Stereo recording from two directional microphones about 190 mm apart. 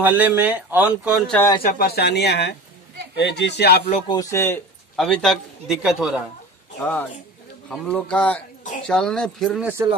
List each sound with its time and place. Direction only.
0.0 s a man's voice: 10° right (ahead or behind)
1.2 s a man's voice: 5° left (ahead or behind)
1.6 s speech: 50° left (ahead or behind)
4.1 s a man's voice: 15° left (ahead or behind)
4.9 s a man's voice: 5° left (ahead or behind)
6.8 s a man's voice: 10° left (ahead or behind)